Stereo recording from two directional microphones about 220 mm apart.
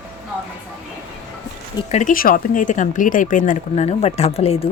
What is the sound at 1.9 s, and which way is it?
A woman's voice, 35° left (ahead or behind).